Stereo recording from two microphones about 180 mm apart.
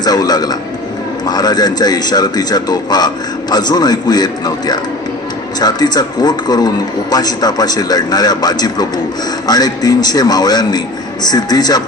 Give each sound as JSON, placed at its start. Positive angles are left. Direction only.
{"t": 0.0, "sound": "a man's voice", "side_deg": 20}